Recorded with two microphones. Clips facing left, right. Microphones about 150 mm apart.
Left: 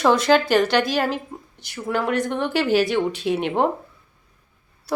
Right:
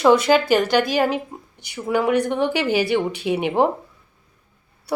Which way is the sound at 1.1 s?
65° right (ahead or behind).